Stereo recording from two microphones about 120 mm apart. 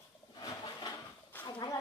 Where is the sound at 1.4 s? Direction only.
15° left (ahead or behind).